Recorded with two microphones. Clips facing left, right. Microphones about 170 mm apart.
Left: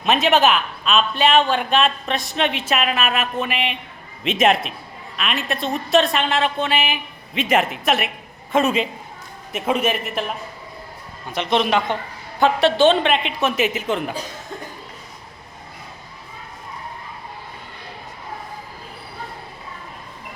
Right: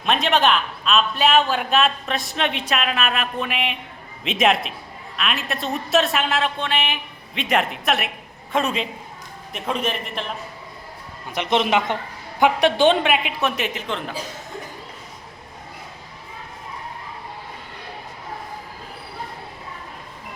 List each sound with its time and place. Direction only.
0.0 s a man's voice: 5° left (ahead or behind)
11.3 s a man's voice: 15° right (ahead or behind)
13.6 s a man's voice: 5° left (ahead or behind)